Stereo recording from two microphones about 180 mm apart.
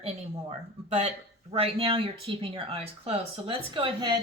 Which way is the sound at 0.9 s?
35° right (ahead or behind).